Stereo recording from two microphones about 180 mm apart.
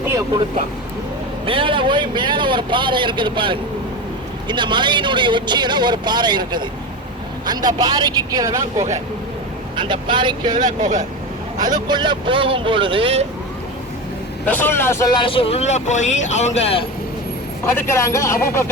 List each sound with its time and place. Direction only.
1.5 s a man's voice: 30° right (ahead or behind)
9.7 s a man's voice: 25° right (ahead or behind)
10.7 s speech: 45° right (ahead or behind)
11.6 s a man's voice: 25° right (ahead or behind)
14.4 s speech: 10° left (ahead or behind); by 16.8 s 35° left (ahead or behind)
17.7 s speech: 15° left (ahead or behind)